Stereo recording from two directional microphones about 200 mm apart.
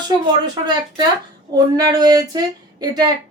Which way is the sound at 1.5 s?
20° right (ahead or behind).